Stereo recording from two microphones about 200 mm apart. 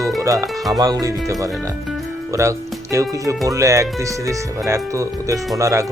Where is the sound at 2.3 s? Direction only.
15° right (ahead or behind).